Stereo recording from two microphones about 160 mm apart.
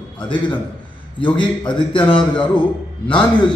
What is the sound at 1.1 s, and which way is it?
A man's voice, 30° left (ahead or behind).